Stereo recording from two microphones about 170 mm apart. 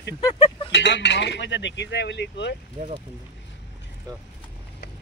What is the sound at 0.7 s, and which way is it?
Speech, 90° left.